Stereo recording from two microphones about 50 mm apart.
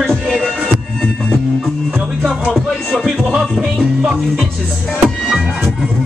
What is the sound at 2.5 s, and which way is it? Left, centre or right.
Music, centre.